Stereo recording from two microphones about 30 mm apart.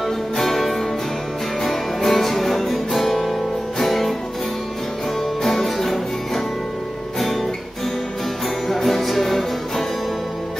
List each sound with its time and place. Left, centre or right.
0.4 s music: centre
5.4 s music: centre
8.6 s music: centre